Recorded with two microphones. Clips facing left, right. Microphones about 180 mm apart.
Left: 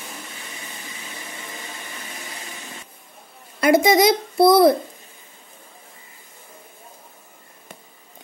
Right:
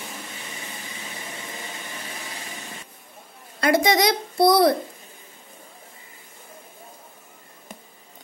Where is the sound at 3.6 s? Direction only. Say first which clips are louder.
Left 4 dB; 25° left (ahead or behind).